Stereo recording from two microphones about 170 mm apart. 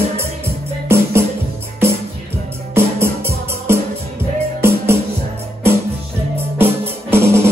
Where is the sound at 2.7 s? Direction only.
15° right (ahead or behind).